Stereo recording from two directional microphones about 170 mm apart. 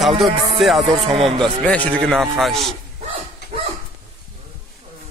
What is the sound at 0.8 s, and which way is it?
Speech, 35° right (ahead or behind).